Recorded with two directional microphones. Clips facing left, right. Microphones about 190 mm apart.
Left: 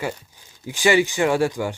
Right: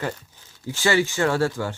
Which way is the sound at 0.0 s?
15° left (ahead or behind).